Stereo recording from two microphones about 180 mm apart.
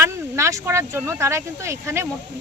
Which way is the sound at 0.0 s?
15° right (ahead or behind).